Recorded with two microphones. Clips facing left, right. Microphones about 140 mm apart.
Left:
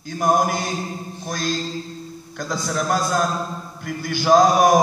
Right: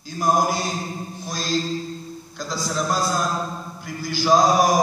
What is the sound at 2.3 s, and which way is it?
Mantra, 55° left (ahead or behind).